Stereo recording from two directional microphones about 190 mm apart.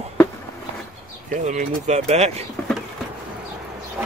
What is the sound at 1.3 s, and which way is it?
Speech, 40° right (ahead or behind).